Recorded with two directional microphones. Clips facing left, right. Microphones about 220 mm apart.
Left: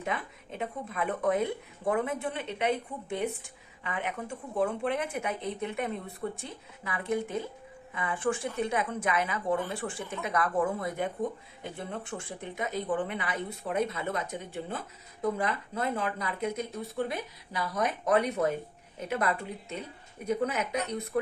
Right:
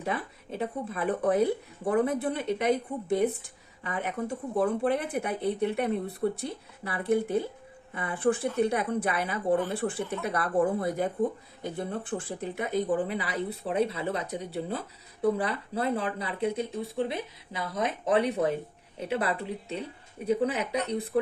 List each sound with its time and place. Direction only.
0.0 s speech: 35° right (ahead or behind)